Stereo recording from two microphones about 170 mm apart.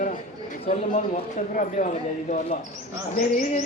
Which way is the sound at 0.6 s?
35° left (ahead or behind).